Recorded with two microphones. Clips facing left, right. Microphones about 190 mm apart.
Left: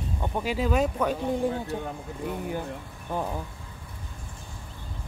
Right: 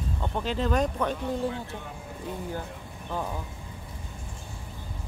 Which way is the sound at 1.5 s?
40° left (ahead or behind).